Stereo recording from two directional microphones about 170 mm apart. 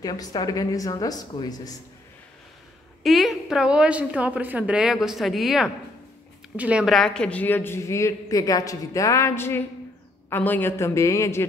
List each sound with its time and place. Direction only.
0.0 s speech: 25° left (ahead or behind)
3.0 s a woman's voice: centre (ahead or behind); by 11.4 s 15° left (ahead or behind)